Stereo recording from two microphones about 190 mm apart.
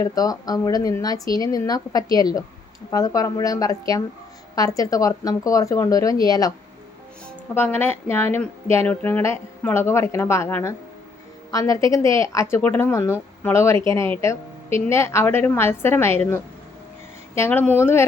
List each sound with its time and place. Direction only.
0.0 s speech: 20° left (ahead or behind)
7.5 s a woman's voice: 10° left (ahead or behind)